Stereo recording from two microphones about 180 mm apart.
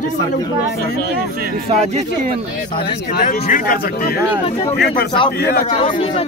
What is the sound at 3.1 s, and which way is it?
Speech, 45° left (ahead or behind).